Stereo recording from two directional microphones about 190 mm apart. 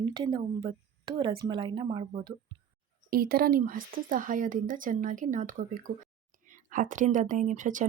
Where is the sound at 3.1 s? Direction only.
50° right (ahead or behind).